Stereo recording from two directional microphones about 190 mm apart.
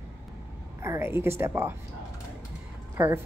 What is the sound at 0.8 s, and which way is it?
Speech, 15° right (ahead or behind).